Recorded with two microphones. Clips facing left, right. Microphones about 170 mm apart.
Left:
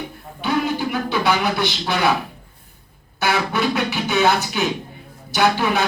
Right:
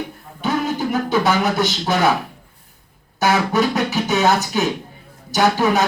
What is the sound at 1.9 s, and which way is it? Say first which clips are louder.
Speech: right 2 dB; 45° right (ahead or behind).